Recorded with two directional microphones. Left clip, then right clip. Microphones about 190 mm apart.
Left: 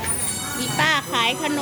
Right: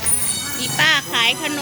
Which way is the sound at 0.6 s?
10° left (ahead or behind).